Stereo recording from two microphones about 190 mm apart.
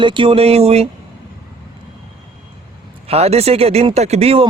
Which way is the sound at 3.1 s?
30° right (ahead or behind).